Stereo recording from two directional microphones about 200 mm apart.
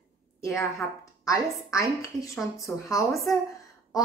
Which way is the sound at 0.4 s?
15° left (ahead or behind).